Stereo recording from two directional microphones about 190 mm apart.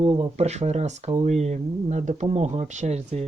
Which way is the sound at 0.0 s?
30° right (ahead or behind).